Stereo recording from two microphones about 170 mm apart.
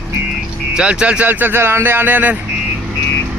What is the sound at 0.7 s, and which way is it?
A man's voice, 5° right (ahead or behind).